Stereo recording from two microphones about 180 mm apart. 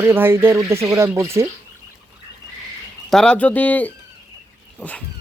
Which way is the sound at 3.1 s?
5° left (ahead or behind).